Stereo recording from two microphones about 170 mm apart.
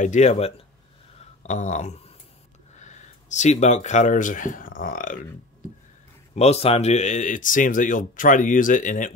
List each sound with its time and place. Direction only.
0.0 s speech: 45° left (ahead or behind)
6.3 s speech: 40° left (ahead or behind)